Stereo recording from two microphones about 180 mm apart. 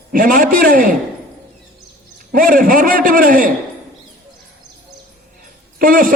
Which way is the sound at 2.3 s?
50° right (ahead or behind).